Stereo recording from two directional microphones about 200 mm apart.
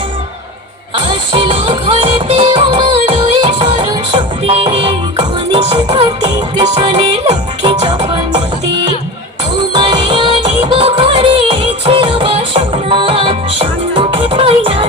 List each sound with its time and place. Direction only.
0.9 s music: 25° right (ahead or behind)